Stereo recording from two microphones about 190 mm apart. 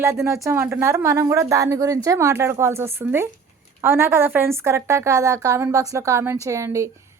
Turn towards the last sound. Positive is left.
turn(degrees=-15)  # may be behind; listen again after turning